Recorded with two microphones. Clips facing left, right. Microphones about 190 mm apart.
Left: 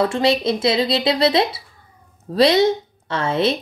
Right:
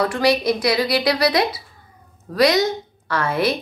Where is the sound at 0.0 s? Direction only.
25° left (ahead or behind).